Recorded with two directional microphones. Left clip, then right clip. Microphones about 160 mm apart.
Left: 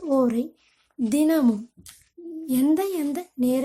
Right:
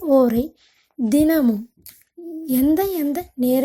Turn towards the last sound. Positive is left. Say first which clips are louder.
# right 5 dB
turn(degrees=-30)  # may be behind; listen again after turning